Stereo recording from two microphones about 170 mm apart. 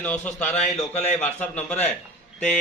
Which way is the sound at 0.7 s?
40° left (ahead or behind).